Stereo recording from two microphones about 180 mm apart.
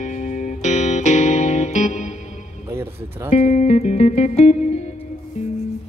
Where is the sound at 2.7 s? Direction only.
15° right (ahead or behind).